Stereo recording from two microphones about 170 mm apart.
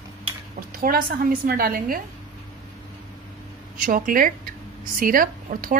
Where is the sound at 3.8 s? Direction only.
55° right (ahead or behind).